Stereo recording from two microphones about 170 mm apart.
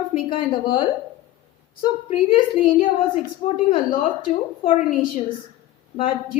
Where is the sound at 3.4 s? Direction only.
40° left (ahead or behind).